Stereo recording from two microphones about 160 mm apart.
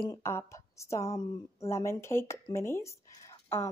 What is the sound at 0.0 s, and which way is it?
Speech, 20° left (ahead or behind).